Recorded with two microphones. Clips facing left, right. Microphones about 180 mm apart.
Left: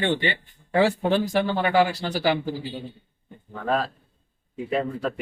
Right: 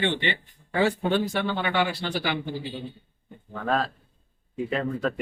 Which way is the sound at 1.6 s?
40° left (ahead or behind).